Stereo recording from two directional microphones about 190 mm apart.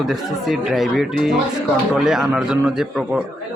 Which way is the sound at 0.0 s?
Centre (ahead or behind).